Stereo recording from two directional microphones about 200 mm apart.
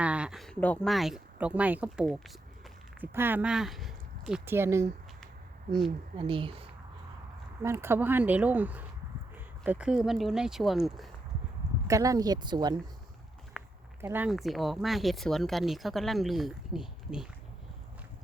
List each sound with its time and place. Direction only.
0.0 s speech: 5° right (ahead or behind)
6.1 s speech: 25° right (ahead or behind)
7.6 s speech: 15° right (ahead or behind)
11.9 s speech: 15° right (ahead or behind)
13.6 s walk: centre (ahead or behind)
14.0 s speech: 10° right (ahead or behind)